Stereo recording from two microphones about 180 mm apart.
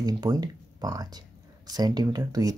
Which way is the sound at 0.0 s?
20° right (ahead or behind).